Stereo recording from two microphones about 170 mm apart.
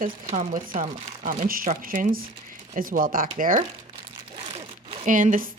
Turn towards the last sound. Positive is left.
turn(degrees=-50)  # may be behind; listen again after turning